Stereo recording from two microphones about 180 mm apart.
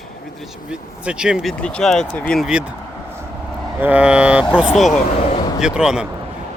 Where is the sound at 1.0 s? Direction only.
5° right (ahead or behind).